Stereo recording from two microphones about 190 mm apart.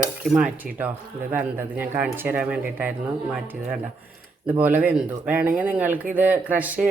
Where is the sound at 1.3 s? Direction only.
10° right (ahead or behind).